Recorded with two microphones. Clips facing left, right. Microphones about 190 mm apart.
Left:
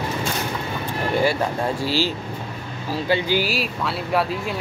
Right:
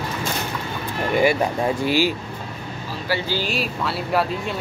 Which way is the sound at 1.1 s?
15° right (ahead or behind).